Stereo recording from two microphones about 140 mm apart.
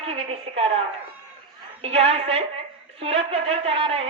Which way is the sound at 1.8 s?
45° right (ahead or behind).